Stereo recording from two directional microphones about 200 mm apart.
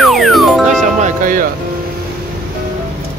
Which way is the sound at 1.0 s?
40° right (ahead or behind).